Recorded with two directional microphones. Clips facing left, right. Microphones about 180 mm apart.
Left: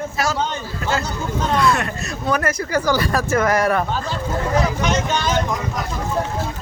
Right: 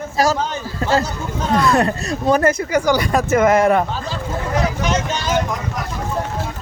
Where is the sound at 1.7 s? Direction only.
35° right (ahead or behind).